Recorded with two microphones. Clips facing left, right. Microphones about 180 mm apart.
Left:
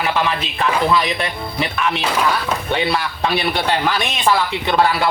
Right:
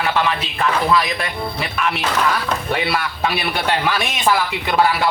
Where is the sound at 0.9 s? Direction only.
25° left (ahead or behind).